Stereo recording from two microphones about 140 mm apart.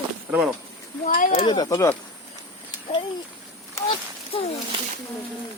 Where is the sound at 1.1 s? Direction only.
80° left.